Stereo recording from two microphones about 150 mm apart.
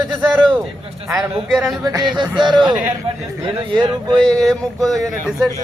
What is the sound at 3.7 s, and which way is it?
Speech, 30° right (ahead or behind).